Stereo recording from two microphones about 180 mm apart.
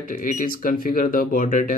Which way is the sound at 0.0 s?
50° left (ahead or behind).